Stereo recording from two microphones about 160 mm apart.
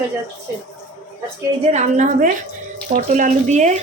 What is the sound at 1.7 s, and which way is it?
A woman's voice, 45° right (ahead or behind).